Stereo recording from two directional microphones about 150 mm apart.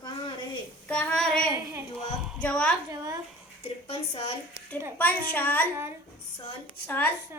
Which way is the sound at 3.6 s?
40° left (ahead or behind).